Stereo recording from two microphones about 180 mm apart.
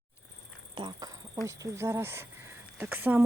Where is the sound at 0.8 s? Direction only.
25° right (ahead or behind).